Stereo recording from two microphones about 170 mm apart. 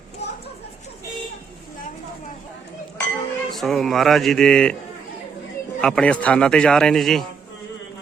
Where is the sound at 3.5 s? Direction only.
Centre (ahead or behind).